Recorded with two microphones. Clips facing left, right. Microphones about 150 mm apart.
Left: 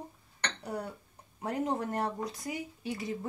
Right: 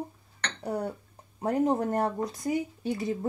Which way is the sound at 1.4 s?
40° right (ahead or behind).